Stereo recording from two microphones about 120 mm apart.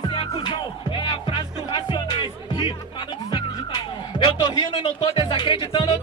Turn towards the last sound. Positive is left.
turn(degrees=40)  # may be behind; listen again after turning